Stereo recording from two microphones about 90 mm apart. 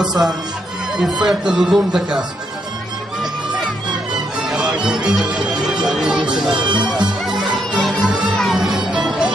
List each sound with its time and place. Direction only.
0.0 s speech: centre (ahead or behind)
3.2 s music: 5° right (ahead or behind)
5.2 s speech: 10° right (ahead or behind)
6.5 s speech: 55° right (ahead or behind)
6.9 s music: 5° right (ahead or behind)